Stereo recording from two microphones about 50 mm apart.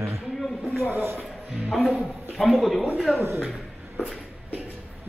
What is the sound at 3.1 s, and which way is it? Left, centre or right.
Speech, right.